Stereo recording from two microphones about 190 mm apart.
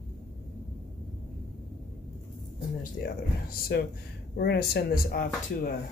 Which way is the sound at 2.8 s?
50° left (ahead or behind).